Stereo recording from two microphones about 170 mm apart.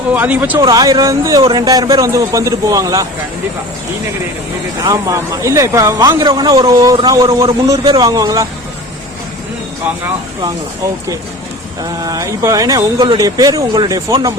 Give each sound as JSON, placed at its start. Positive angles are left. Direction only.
{"t": 0.1, "sound": "speech", "side_deg": -10}
{"t": 0.6, "sound": "a man's voice", "side_deg": -20}
{"t": 4.8, "sound": "a man's voice", "side_deg": -20}
{"t": 11.8, "sound": "a man's voice", "side_deg": -20}